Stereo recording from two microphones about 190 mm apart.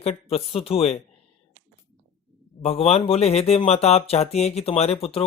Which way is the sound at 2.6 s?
35° left (ahead or behind).